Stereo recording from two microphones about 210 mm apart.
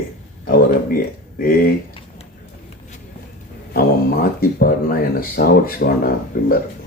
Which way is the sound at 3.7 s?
45° left (ahead or behind).